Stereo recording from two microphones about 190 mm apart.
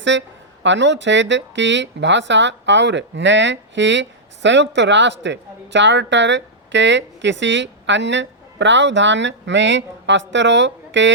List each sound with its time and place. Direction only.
0.0 s a woman's voice: 70° right (ahead or behind)